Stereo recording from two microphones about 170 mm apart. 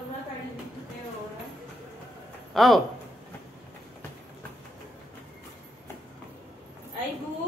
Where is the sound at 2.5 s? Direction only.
Centre (ahead or behind).